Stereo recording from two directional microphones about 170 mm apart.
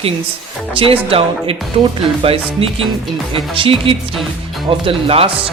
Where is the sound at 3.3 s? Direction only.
30° right (ahead or behind).